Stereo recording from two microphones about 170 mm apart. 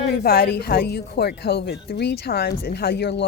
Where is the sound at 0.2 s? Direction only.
65° left (ahead or behind).